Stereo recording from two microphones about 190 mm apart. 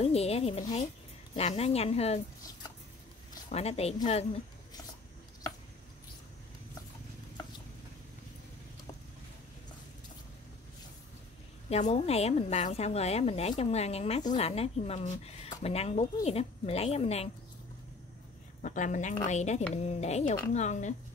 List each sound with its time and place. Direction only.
0.0 s speech: 30° left (ahead or behind)
3.4 s speech: 35° left (ahead or behind)
11.7 s speech: 35° left (ahead or behind)
18.6 s a woman's voice: 40° left (ahead or behind)